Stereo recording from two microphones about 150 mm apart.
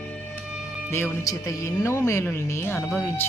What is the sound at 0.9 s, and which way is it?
Speech, 15° left (ahead or behind).